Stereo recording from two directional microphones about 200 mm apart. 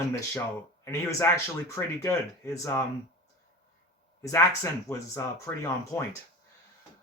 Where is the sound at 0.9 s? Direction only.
15° left (ahead or behind).